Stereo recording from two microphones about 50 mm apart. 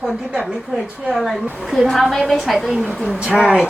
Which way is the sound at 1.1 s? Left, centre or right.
Centre.